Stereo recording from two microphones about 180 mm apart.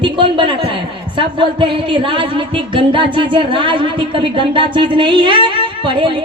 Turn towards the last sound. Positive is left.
turn(degrees=-25)  # may be behind; listen again after turning